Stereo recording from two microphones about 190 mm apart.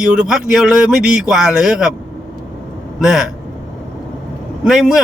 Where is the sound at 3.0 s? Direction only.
5° right (ahead or behind).